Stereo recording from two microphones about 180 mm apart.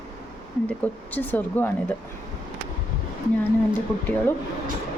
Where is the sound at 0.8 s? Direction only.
10° left (ahead or behind).